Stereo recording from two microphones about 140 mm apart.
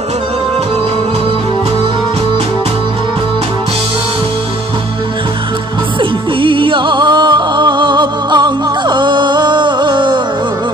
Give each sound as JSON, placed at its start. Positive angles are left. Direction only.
{"t": 5.9, "sound": "music", "side_deg": -35}